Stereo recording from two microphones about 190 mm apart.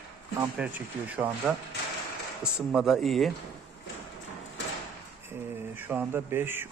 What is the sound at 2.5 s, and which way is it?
Speech, 5° right (ahead or behind).